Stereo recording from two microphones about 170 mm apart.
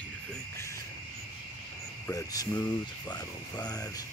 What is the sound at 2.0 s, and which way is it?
Speech, 20° left (ahead or behind).